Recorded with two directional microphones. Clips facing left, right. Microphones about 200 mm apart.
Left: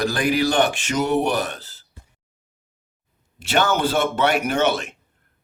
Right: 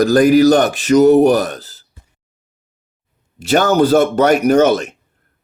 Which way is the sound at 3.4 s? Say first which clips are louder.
Right 8 dB; 40° right (ahead or behind).